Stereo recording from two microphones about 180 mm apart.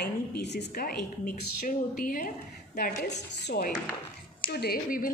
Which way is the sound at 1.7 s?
50° left (ahead or behind).